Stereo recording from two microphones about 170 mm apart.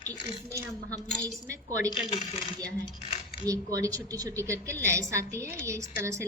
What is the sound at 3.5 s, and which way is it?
A woman's voice, 20° right (ahead or behind).